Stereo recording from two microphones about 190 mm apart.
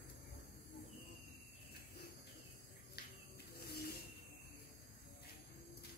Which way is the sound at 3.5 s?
55° left (ahead or behind).